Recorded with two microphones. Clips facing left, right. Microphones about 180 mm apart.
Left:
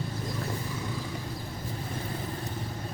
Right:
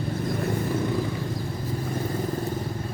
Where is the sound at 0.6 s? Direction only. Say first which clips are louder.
Right 10 dB; 60° right (ahead or behind).